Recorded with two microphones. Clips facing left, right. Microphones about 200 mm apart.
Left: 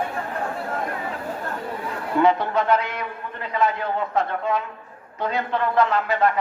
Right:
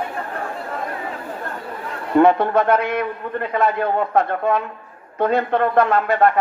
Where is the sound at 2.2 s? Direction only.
55° right (ahead or behind).